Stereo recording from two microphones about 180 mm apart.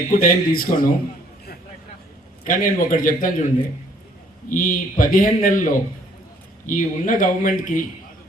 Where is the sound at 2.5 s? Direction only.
50° left (ahead or behind).